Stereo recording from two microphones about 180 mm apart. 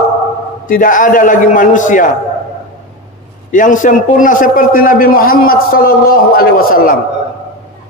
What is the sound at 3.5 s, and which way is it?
A man's voice, 45° left (ahead or behind).